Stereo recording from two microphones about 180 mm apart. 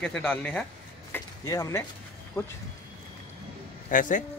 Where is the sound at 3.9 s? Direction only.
45° left (ahead or behind).